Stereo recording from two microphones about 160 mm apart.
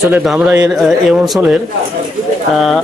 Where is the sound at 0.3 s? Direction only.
5° right (ahead or behind).